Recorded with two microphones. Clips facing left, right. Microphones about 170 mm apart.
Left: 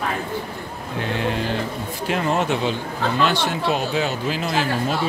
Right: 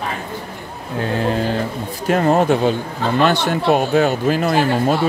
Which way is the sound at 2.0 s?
45° right (ahead or behind).